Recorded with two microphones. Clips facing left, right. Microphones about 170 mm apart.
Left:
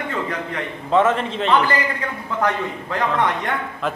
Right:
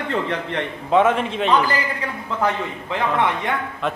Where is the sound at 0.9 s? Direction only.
10° right (ahead or behind).